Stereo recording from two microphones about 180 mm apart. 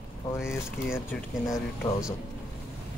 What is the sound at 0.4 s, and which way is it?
Speech, 5° right (ahead or behind).